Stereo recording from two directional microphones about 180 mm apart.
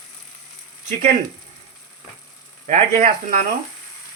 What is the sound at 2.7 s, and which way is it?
Speech, 30° right (ahead or behind).